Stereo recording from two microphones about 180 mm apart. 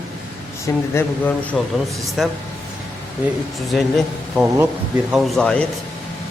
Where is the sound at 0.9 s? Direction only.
10° left (ahead or behind).